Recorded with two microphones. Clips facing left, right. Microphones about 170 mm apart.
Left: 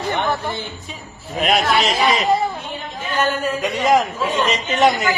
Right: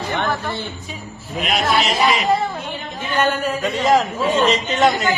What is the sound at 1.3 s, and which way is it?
Speech, 50° left (ahead or behind).